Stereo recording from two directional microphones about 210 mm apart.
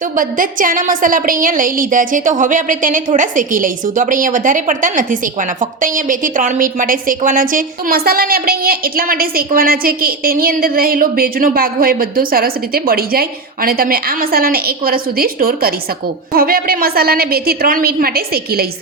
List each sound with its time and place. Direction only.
0.2 s a woman's voice: 40° right (ahead or behind)